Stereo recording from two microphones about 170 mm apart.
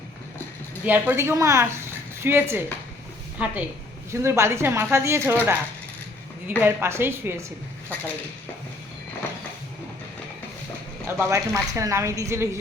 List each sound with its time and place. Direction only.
0.9 s a woman's voice: 10° right (ahead or behind)
6.6 s a woman's voice: 15° right (ahead or behind)
11.2 s a woman's voice: 15° right (ahead or behind)